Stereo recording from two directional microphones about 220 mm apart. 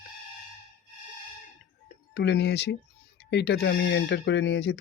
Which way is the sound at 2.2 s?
50° left (ahead or behind).